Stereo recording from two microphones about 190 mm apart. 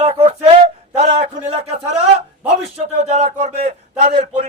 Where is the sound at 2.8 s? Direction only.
35° right (ahead or behind).